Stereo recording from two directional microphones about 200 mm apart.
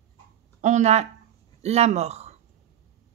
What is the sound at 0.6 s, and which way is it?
Speech, 35° right (ahead or behind).